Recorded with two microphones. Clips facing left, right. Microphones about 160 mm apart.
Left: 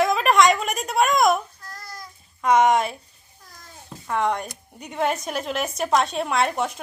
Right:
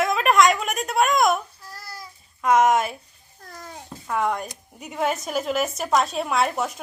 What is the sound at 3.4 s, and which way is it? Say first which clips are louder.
Babbling: right 8 dB; 65° right (ahead or behind).